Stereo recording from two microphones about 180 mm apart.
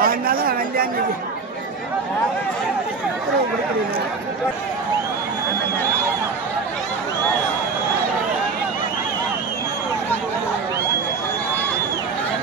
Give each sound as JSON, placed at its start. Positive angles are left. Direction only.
{"t": 0.0, "sound": "chatter", "side_deg": -55}